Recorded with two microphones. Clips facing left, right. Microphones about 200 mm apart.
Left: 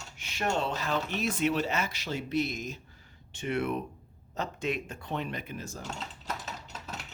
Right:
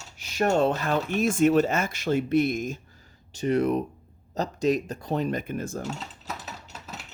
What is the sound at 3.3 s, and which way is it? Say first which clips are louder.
Speech: right 7 dB; 35° right (ahead or behind).